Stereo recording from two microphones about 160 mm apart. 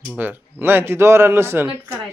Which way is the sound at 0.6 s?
15° right (ahead or behind).